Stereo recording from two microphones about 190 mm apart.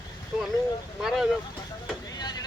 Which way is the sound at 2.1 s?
20° left (ahead or behind).